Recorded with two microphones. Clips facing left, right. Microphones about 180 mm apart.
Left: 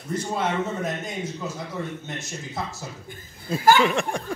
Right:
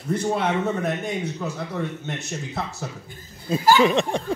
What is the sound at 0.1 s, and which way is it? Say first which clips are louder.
A man's voice: right 3 dB; 60° right (ahead or behind).